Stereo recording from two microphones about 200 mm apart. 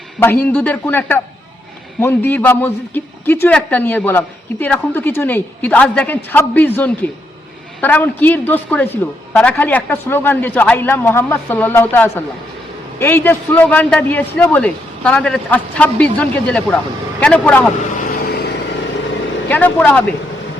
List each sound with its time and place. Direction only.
0.2 s a man's voice: 10° left (ahead or behind)
18.1 s vehicle: 50° left (ahead or behind)
19.5 s a man's voice: 10° left (ahead or behind)